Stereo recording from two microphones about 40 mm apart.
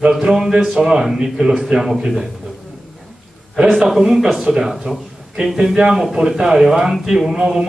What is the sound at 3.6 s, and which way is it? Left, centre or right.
A man's voice, centre.